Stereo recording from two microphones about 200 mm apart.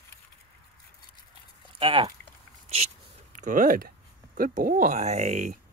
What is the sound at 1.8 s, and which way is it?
Speech, 25° right (ahead or behind).